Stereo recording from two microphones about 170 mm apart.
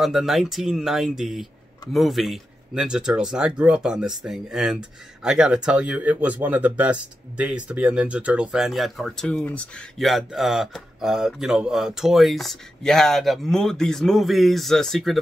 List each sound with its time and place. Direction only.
0.0 s a man's voice: centre (ahead or behind)